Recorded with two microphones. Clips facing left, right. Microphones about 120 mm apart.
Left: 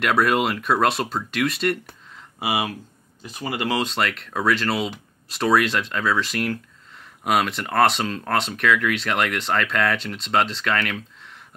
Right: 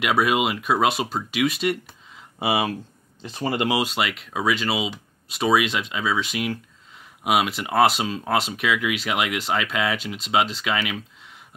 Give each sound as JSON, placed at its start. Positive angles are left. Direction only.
{"t": 0.0, "sound": "speech", "side_deg": -5}
{"t": 2.4, "sound": "speech", "side_deg": -30}
{"t": 3.6, "sound": "speech", "side_deg": -10}